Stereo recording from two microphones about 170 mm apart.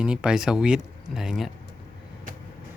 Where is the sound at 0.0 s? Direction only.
5° right (ahead or behind).